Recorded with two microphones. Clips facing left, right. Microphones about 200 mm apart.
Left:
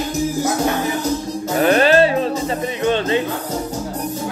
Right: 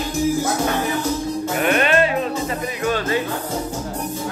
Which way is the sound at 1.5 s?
35° left (ahead or behind).